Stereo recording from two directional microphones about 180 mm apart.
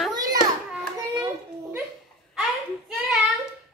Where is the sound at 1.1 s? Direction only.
15° right (ahead or behind).